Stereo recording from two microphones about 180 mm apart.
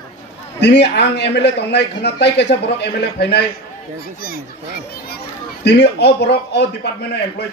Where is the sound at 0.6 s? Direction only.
70° left (ahead or behind).